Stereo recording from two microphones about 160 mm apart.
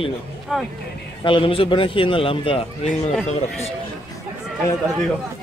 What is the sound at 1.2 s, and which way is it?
A man's voice, 35° left (ahead or behind).